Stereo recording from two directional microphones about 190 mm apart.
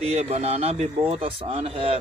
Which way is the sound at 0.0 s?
35° right (ahead or behind).